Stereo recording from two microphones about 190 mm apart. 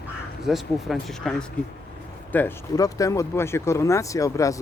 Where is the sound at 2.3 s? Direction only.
15° left (ahead or behind).